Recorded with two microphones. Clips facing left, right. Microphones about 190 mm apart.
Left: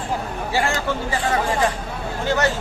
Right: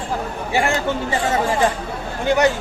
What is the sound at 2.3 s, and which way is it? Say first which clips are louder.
Speech: right 4 dB; 15° right (ahead or behind).